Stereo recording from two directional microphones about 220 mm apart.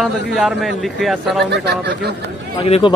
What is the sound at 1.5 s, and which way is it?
Speech, 50° right (ahead or behind).